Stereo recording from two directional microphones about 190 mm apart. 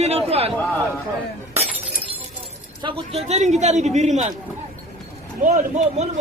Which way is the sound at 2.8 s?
30° right (ahead or behind).